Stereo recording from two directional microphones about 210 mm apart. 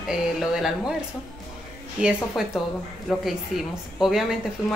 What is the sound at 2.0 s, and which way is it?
A woman's voice, 5° right (ahead or behind).